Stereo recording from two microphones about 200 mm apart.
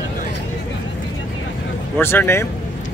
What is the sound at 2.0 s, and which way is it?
Speech, 10° left (ahead or behind).